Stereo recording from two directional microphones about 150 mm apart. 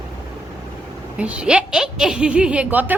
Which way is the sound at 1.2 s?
10° right (ahead or behind).